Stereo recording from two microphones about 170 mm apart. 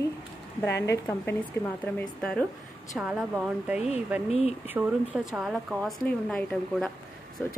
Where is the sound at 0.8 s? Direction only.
15° left (ahead or behind).